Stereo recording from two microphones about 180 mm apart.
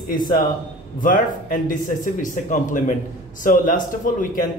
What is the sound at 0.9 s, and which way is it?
Speech, 50° left (ahead or behind).